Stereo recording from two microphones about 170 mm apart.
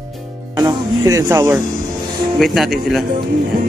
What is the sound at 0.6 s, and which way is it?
Speech, 20° right (ahead or behind).